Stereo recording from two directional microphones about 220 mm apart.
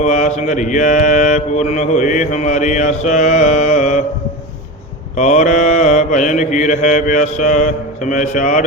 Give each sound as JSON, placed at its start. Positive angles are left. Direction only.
{"t": 0.0, "sound": "mantra", "side_deg": 30}
{"t": 5.1, "sound": "mantra", "side_deg": 30}